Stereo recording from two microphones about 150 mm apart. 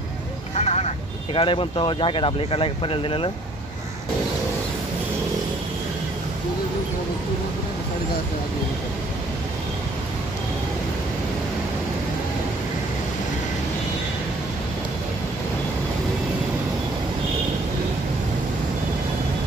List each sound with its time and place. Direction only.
0.6 s speech: 45° left (ahead or behind)